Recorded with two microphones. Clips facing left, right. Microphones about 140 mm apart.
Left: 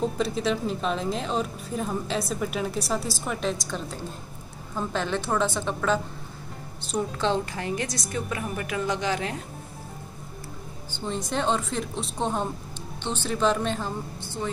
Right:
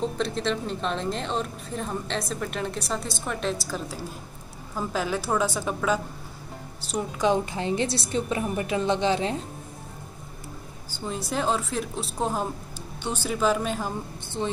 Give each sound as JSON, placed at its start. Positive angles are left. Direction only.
{"t": 0.2, "sound": "a woman's voice", "side_deg": 5}
{"t": 11.1, "sound": "a woman's voice", "side_deg": -5}